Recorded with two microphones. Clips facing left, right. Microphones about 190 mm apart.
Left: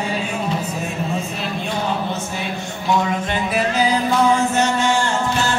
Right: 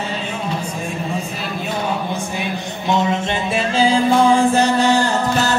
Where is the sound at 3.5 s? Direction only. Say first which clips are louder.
Right 3 dB; 30° right (ahead or behind).